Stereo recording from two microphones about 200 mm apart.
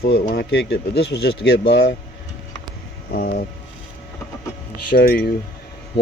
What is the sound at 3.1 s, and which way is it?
Speech, 45° left (ahead or behind).